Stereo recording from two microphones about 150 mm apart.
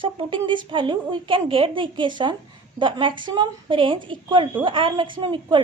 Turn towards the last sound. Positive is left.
turn(degrees=-30)  # may be behind; listen again after turning